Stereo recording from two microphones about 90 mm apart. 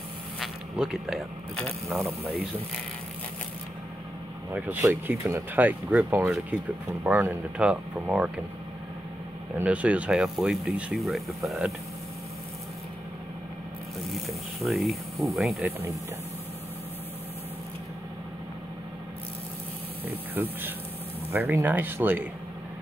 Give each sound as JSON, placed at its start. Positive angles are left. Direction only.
{"t": 0.4, "sound": "zipper", "side_deg": -5}
{"t": 1.9, "sound": "speech", "side_deg": -5}
{"t": 5.0, "sound": "speech", "side_deg": -20}
{"t": 9.6, "sound": "speech", "side_deg": -15}
{"t": 14.0, "sound": "speech", "side_deg": 0}
{"t": 20.4, "sound": "speech", "side_deg": -20}